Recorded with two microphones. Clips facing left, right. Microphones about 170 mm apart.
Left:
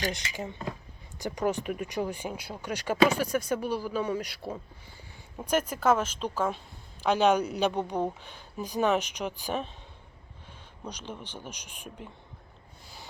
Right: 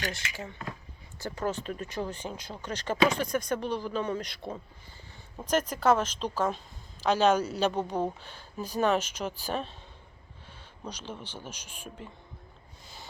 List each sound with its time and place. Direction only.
0.3 s speech: 15° left (ahead or behind)
10.8 s speech: 10° left (ahead or behind)